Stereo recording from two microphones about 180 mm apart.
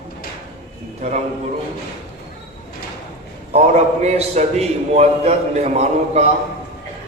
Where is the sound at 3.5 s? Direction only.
40° right (ahead or behind).